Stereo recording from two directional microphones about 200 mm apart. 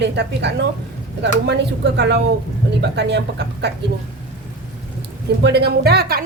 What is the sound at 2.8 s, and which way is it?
Speech, 60° right (ahead or behind).